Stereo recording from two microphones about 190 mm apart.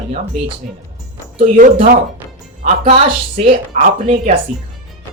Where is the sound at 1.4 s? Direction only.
50° right (ahead or behind).